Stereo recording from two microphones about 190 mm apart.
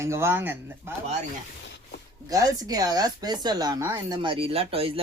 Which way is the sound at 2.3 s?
20° right (ahead or behind).